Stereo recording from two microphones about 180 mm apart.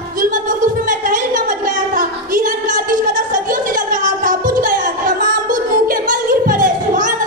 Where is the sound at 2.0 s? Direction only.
50° right (ahead or behind).